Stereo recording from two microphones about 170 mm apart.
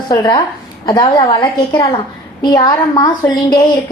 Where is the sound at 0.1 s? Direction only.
25° left (ahead or behind).